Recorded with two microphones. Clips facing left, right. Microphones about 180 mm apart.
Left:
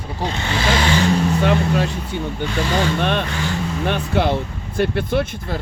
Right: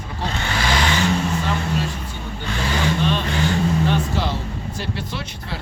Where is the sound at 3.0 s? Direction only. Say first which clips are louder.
Even; 60° left (ahead or behind).